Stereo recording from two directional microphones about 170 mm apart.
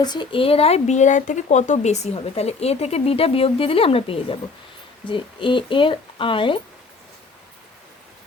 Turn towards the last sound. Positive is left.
turn(degrees=30)  # may be behind; listen again after turning